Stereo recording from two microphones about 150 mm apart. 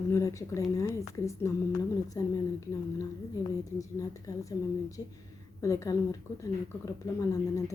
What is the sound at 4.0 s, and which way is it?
Speech, 20° left (ahead or behind).